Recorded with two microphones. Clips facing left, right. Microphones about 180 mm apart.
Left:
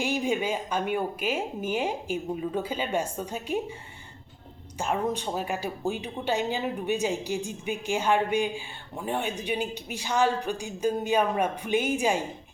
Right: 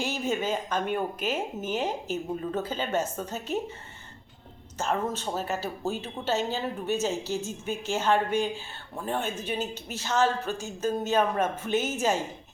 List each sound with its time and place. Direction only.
0.0 s speech: 15° left (ahead or behind)
4.8 s speech: 15° left (ahead or behind)